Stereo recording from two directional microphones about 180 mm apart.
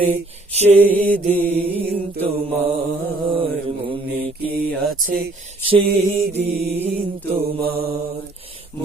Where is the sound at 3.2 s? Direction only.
30° right (ahead or behind).